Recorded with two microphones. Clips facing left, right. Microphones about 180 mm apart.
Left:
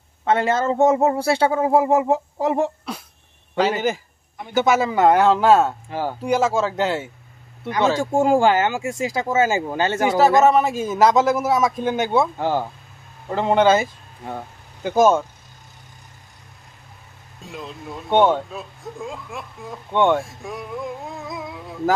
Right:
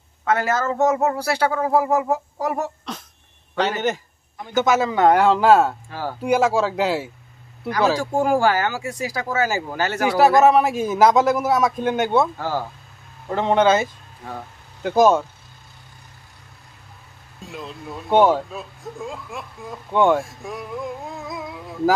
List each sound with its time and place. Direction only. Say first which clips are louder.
0.2 s speech: left 2 dB; 25° left (ahead or behind)
3.8 s speech: even; 10° left (ahead or behind)
5.9 s speech: left 3 dB; 15° left (ahead or behind)
6.2 s speech: right 2 dB; 5° right (ahead or behind)
8.0 s speech: left 2 dB; 25° left (ahead or behind)
10.4 s speech: right 1 dB; centre (ahead or behind)
12.4 s speech: left 4 dB; 20° left (ahead or behind)
13.3 s speech: left 1 dB; 5° left (ahead or behind)
17.4 s speech: even; centre (ahead or behind)